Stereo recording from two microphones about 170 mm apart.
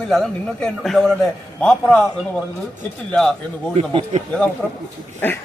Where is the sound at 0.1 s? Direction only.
Centre (ahead or behind).